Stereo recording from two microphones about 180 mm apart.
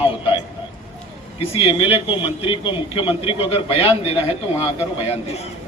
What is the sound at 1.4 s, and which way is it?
A man's voice, 30° left (ahead or behind).